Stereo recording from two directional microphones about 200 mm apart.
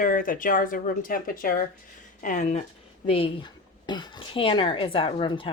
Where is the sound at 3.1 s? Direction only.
25° left (ahead or behind).